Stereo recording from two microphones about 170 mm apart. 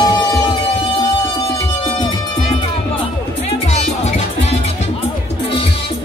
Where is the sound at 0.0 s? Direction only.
25° left (ahead or behind).